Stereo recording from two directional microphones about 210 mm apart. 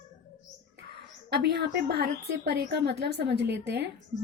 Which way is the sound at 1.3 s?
50° right (ahead or behind).